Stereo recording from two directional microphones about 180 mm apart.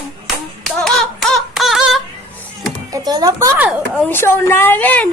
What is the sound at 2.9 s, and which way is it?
Music, 20° right (ahead or behind).